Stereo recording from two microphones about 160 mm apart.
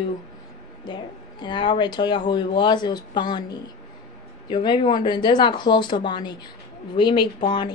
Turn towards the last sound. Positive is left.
turn(degrees=30)  # may be behind; listen again after turning